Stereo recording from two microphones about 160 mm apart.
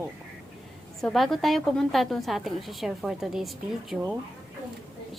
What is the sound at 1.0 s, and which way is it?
A woman's voice, centre (ahead or behind).